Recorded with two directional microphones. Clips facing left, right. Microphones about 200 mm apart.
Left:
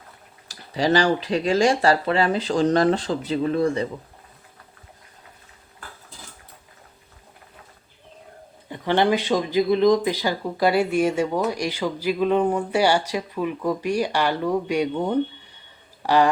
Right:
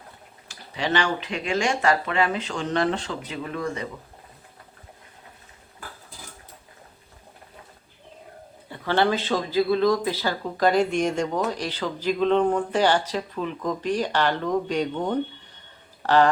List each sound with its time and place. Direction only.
0.4 s speech: 35° left (ahead or behind)
8.7 s speech: 15° left (ahead or behind)